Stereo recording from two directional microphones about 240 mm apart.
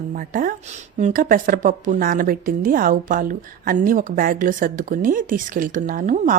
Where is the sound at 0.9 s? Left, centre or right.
Right.